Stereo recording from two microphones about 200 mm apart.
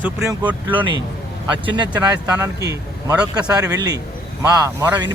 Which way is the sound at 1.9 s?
15° right (ahead or behind).